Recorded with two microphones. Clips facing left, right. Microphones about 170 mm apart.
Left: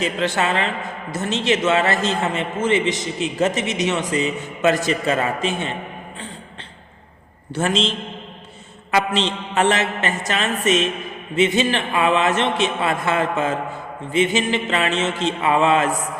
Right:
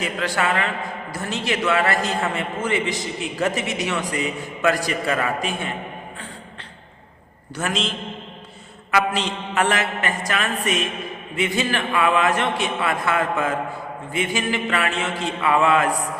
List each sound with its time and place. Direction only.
0.0 s a man's voice: 25° left (ahead or behind)
7.5 s a man's voice: 25° left (ahead or behind)